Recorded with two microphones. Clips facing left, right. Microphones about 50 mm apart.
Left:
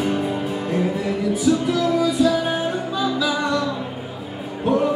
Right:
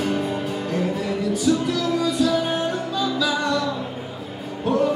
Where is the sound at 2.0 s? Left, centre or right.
Centre.